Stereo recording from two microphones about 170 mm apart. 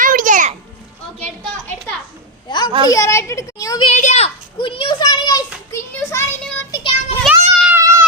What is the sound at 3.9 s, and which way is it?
A child's voice, 45° left (ahead or behind).